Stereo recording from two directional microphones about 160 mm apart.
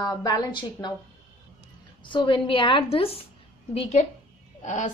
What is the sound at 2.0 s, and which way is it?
A woman's voice, 30° left (ahead or behind).